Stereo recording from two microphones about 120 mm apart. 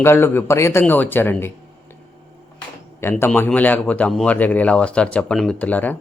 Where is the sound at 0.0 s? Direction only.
20° left (ahead or behind).